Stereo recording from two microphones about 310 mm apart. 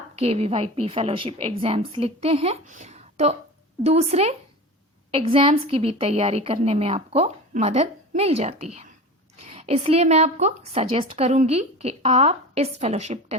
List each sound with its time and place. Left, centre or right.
0.2 s a woman's voice: centre